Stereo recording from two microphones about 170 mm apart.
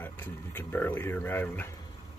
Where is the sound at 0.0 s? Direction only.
10° left (ahead or behind).